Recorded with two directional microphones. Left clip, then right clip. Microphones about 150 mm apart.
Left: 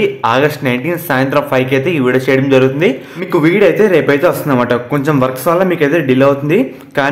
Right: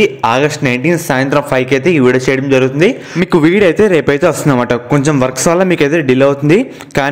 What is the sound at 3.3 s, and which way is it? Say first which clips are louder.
Speech: even; 45° right (ahead or behind).